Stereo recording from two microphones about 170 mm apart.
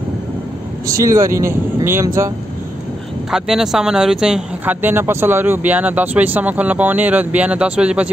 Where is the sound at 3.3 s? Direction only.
Centre (ahead or behind).